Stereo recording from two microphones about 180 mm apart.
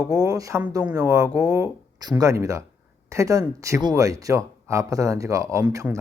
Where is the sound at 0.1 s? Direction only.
20° right (ahead or behind).